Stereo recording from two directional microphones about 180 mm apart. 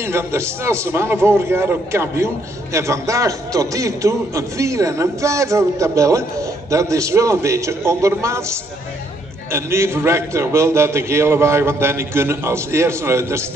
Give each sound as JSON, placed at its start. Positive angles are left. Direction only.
{"t": 0.0, "sound": "a man's voice", "side_deg": -15}